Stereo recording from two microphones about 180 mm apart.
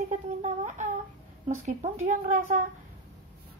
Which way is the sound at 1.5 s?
45° right (ahead or behind).